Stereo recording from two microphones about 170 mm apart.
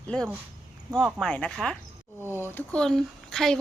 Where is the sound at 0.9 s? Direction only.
5° left (ahead or behind).